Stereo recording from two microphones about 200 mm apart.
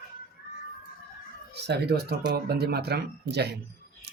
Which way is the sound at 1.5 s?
55° right (ahead or behind).